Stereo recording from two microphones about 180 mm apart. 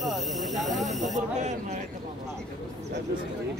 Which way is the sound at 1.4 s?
40° right (ahead or behind).